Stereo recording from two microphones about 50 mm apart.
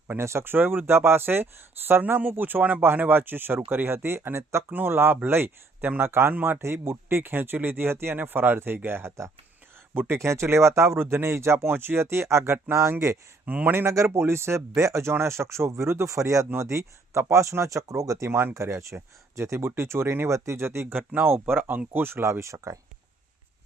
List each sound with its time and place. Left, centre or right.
0.2 s speech: right
0.5 s speech: right
10.2 s speech: right
10.9 s speech: right
11.2 s speech: right
12.0 s speech: right
13.4 s speech: right
13.7 s speech: right
15.2 s speech: right
16.6 s speech: right
19.4 s speech: right
20.9 s speech: right
21.9 s speech: right